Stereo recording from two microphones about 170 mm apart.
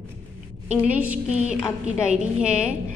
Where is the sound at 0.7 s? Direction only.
10° right (ahead or behind).